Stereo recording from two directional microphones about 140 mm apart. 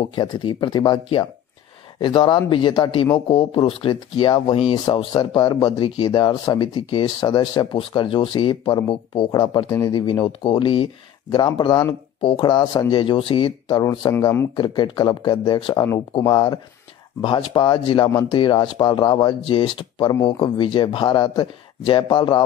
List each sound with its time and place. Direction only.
0.1 s speech: 35° left (ahead or behind)
14.2 s speech: 20° left (ahead or behind)
14.5 s speech: 35° left (ahead or behind)
17.2 s speech: 35° left (ahead or behind)